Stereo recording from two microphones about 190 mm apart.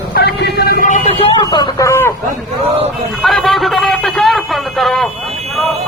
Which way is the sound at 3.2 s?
Centre (ahead or behind).